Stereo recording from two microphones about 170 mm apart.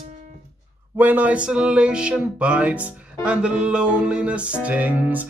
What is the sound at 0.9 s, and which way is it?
Music, 10° right (ahead or behind).